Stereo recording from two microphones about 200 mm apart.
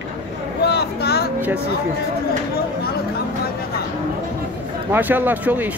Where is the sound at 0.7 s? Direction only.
55° left (ahead or behind).